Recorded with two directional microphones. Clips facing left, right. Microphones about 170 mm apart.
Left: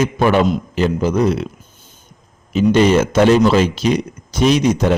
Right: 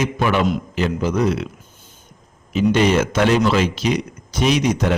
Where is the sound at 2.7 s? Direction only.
40° left (ahead or behind).